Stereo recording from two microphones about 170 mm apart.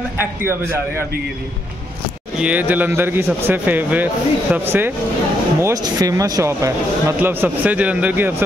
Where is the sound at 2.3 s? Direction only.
10° right (ahead or behind).